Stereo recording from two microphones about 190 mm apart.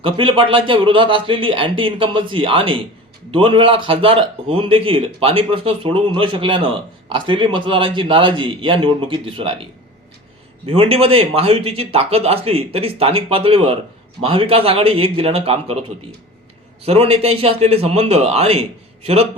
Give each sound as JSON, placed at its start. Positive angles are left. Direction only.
{"t": 0.0, "sound": "a man's voice", "side_deg": -25}
{"t": 10.7, "sound": "a man's voice", "side_deg": -30}
{"t": 16.8, "sound": "speech", "side_deg": -30}